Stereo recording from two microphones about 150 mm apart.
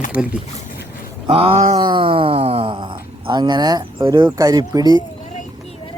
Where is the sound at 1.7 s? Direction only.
30° right (ahead or behind).